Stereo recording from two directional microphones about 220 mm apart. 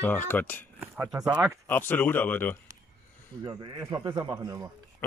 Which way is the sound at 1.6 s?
10° left (ahead or behind).